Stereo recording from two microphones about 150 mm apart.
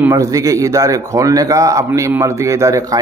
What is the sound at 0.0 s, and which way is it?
A man's voice, 20° right (ahead or behind).